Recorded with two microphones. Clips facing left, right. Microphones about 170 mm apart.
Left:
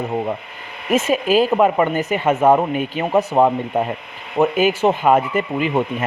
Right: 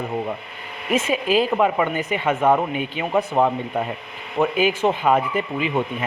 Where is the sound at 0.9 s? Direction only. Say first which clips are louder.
Left 4 dB; 45° left (ahead or behind).